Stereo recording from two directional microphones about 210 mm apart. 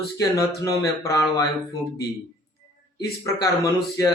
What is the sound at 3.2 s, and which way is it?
Speech, 15° left (ahead or behind).